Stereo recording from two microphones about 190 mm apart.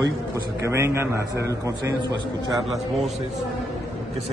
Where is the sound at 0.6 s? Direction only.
15° right (ahead or behind).